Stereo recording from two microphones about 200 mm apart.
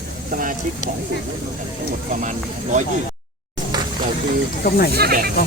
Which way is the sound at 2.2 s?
40° right (ahead or behind).